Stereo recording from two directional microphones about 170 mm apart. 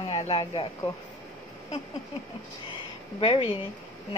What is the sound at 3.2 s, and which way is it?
Speech, 30° left (ahead or behind).